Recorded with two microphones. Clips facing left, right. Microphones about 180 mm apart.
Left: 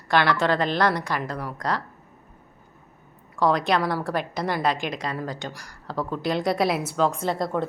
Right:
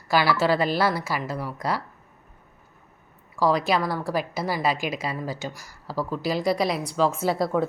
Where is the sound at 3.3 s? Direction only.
Centre (ahead or behind).